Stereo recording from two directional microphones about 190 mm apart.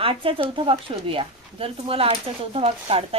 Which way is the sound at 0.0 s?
30° right (ahead or behind).